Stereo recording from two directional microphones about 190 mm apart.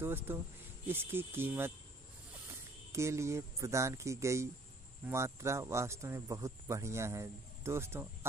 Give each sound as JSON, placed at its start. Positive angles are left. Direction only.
{"t": 0.0, "sound": "speech", "side_deg": -10}
{"t": 2.9, "sound": "speech", "side_deg": -15}